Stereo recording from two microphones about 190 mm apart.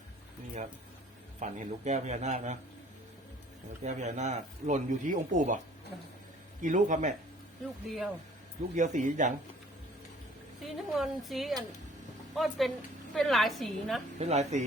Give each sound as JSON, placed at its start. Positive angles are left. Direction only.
{"t": 1.4, "sound": "speech", "side_deg": -40}
{"t": 3.8, "sound": "speech", "side_deg": -40}
{"t": 6.6, "sound": "speech", "side_deg": -40}
{"t": 7.9, "sound": "speech", "side_deg": 0}
{"t": 8.7, "sound": "speech", "side_deg": -40}
{"t": 10.6, "sound": "speech", "side_deg": 0}
{"t": 14.2, "sound": "speech", "side_deg": -35}